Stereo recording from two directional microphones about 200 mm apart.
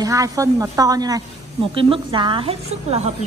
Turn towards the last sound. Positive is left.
turn(degrees=-30)  # may be behind; listen again after turning